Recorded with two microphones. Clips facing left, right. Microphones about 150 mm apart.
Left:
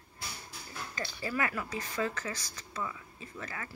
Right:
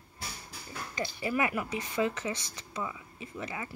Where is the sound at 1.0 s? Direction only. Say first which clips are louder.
Right 4 dB; 20° right (ahead or behind).